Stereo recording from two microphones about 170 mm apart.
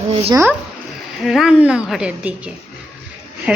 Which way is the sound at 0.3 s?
15° right (ahead or behind).